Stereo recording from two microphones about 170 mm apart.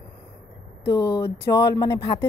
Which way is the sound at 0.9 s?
20° left (ahead or behind).